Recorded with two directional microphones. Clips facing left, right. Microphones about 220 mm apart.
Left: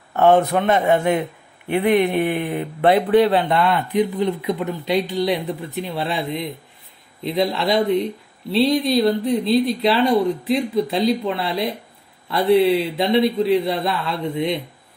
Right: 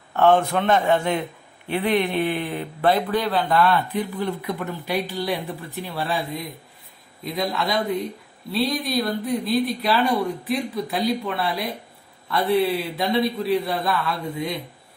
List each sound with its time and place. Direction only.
0.1 s a man's voice: 20° left (ahead or behind)
2.8 s speech: 25° left (ahead or behind)